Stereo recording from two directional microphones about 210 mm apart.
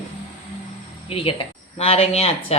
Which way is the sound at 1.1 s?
25° left (ahead or behind).